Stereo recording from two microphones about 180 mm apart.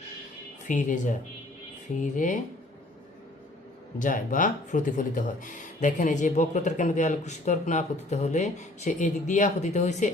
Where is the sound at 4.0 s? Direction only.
45° left (ahead or behind).